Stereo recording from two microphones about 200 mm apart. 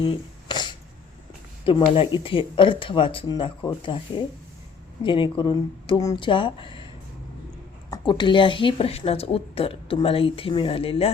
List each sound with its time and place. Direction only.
0.0 s a sound: 25° left (ahead or behind)
1.6 s a woman's voice: 25° left (ahead or behind)
7.9 s a woman's voice: 20° left (ahead or behind)